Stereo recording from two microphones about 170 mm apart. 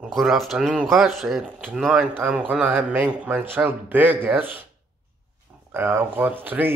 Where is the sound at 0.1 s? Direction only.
Centre (ahead or behind).